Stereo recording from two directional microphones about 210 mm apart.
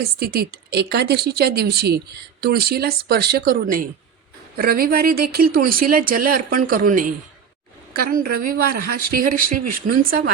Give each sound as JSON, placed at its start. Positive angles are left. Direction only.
{"t": 0.0, "sound": "a woman's voice", "side_deg": -45}